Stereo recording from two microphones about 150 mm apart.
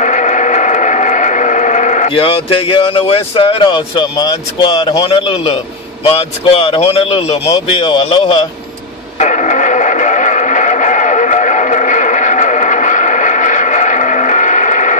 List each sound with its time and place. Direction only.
0.0 s a sound: 55° left (ahead or behind)
2.0 s speech: 40° left (ahead or behind)
5.0 s speech: 40° left (ahead or behind)
9.2 s radio: 55° left (ahead or behind)